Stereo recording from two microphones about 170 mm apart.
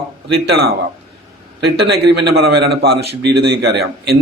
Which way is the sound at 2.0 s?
70° right (ahead or behind).